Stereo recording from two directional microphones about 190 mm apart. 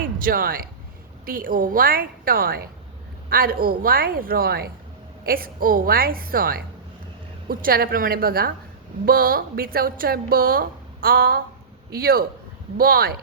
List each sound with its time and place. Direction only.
0.2 s a woman's voice: 50° right (ahead or behind)
7.6 s a woman's voice: 50° right (ahead or behind)